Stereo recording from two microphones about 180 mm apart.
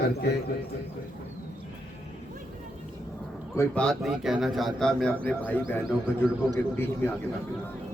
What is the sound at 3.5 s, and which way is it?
Speech, 5° left (ahead or behind).